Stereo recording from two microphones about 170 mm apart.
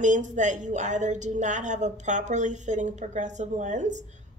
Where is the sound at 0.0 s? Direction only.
45° right (ahead or behind).